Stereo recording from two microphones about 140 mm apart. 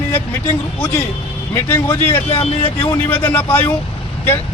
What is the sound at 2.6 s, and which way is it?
Speech, 30° left (ahead or behind).